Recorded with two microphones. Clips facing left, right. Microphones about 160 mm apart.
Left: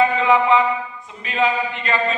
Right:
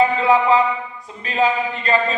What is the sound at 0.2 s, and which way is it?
A man's voice, 35° right (ahead or behind).